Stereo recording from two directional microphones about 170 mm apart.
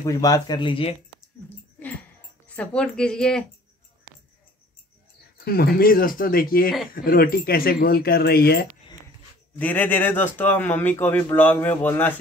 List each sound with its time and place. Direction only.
0.0 s speech: 20° left (ahead or behind)
2.4 s speech: 10° left (ahead or behind)
5.4 s speech: 65° left (ahead or behind)
9.6 s a man's voice: 10° left (ahead or behind)